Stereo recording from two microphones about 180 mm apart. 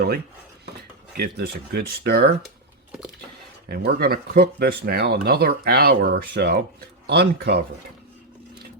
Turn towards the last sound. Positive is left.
turn(degrees=-65)  # may be behind; listen again after turning